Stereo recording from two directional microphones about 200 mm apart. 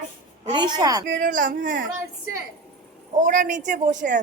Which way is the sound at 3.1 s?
40° right (ahead or behind).